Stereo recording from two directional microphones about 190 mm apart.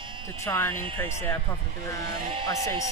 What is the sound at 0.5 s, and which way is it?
Speech, 15° left (ahead or behind).